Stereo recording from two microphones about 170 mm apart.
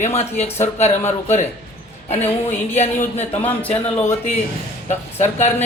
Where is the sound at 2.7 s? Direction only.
40° left (ahead or behind).